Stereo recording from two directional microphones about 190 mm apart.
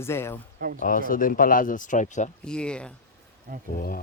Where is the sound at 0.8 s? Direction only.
45° left (ahead or behind).